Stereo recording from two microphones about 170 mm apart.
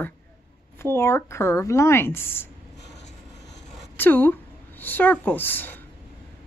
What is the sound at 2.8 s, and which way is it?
Train, 85° left.